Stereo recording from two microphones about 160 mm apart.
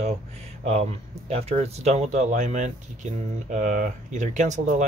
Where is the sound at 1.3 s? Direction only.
40° right (ahead or behind).